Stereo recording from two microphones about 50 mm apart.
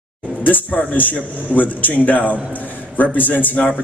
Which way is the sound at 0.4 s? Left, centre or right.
Left.